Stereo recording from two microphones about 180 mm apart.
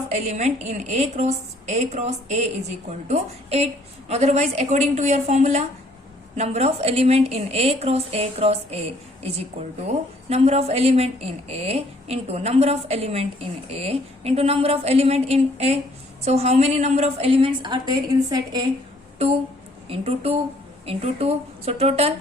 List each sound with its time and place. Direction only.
0.2 s a woman's voice: 40° right (ahead or behind); by 18.6 s 20° right (ahead or behind)
19.9 s a woman's voice: 35° right (ahead or behind)